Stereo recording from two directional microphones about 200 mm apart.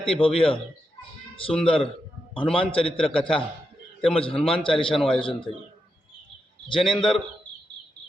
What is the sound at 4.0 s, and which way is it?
Speech, 25° left (ahead or behind).